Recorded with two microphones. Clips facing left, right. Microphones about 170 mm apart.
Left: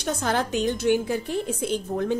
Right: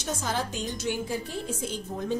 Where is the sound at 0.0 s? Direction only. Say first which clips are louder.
Left 5 dB; 60° left (ahead or behind).